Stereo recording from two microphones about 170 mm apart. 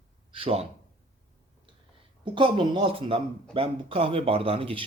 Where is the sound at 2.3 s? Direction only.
30° right (ahead or behind).